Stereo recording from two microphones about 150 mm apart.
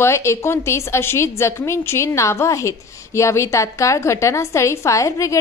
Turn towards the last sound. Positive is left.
turn(degrees=20)  # may be behind; listen again after turning